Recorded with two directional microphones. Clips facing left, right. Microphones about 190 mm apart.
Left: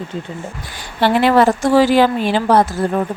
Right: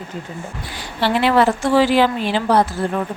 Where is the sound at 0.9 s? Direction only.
50° left (ahead or behind).